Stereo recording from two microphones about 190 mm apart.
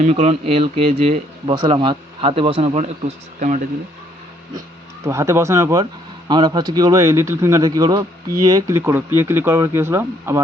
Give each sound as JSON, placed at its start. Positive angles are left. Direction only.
{"t": 0.0, "sound": "speech", "side_deg": -35}
{"t": 5.0, "sound": "speech", "side_deg": -15}